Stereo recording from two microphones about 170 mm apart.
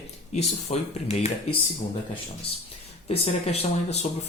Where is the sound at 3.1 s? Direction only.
35° left (ahead or behind).